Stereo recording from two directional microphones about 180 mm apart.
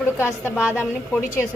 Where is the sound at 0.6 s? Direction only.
5° right (ahead or behind).